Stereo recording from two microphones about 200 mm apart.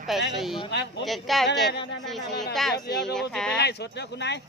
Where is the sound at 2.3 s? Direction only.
55° left (ahead or behind).